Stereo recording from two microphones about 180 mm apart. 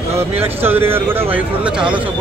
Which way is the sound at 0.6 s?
10° right (ahead or behind).